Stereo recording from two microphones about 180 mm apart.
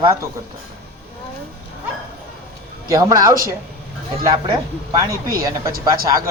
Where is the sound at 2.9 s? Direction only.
20° right (ahead or behind).